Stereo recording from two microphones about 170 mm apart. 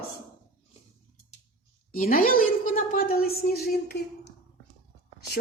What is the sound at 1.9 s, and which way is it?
Speech, 55° left (ahead or behind).